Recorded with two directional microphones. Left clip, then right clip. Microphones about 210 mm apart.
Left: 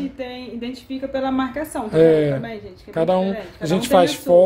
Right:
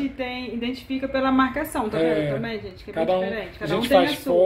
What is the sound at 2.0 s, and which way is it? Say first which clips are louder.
Speech: left 9 dB; 55° left (ahead or behind).